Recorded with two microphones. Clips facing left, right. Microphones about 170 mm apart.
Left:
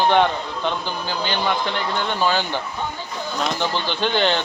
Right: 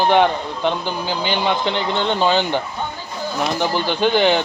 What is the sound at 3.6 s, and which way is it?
Speech, 10° right (ahead or behind).